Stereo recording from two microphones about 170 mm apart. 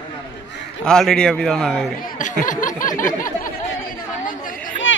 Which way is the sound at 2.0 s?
50° left (ahead or behind).